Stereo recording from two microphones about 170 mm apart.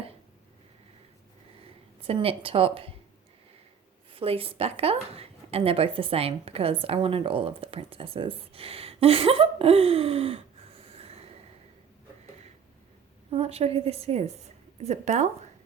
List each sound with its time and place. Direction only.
2.0 s a woman's voice: 35° right (ahead or behind)
4.1 s a woman's voice: 35° right (ahead or behind)
13.3 s a woman's voice: 35° right (ahead or behind)